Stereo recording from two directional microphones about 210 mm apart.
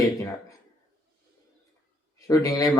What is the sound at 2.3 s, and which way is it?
Speech, 15° left (ahead or behind).